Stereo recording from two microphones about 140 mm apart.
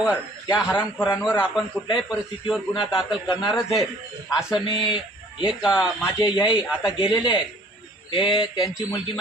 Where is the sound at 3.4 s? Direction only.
Centre (ahead or behind).